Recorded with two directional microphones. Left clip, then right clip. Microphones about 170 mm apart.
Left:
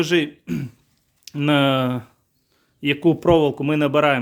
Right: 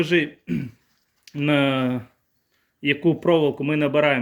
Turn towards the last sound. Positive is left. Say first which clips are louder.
# left 2 dB
turn(degrees=25)  # may be behind; listen again after turning